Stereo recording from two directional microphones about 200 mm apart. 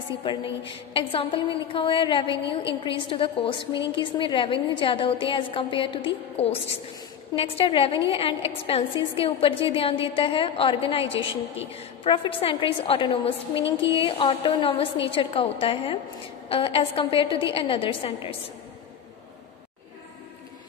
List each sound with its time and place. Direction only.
0.2 s a woman's voice: 25° left (ahead or behind)